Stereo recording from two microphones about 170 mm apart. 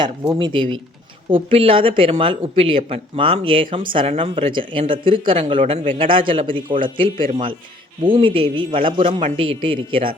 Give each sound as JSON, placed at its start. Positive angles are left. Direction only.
{"t": 0.3, "sound": "speech", "side_deg": -30}